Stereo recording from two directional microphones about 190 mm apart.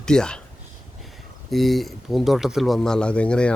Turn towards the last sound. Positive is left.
turn(degrees=5)  # may be behind; listen again after turning